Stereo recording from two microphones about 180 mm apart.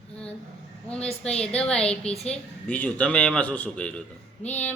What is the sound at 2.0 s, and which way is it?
Speech, 35° left (ahead or behind).